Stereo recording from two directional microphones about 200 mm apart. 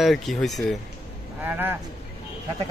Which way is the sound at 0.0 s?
Centre (ahead or behind).